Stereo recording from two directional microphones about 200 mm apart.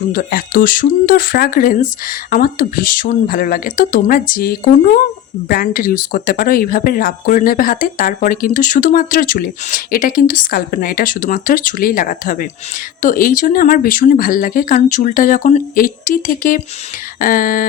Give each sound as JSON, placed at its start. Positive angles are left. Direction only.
{"t": 0.1, "sound": "speech", "side_deg": 45}